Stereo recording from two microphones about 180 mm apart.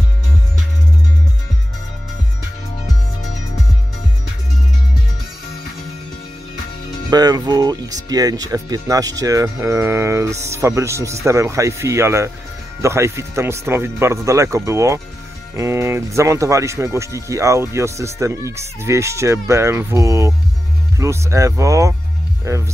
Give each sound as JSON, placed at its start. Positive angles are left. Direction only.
{"t": 7.1, "sound": "speech", "side_deg": -20}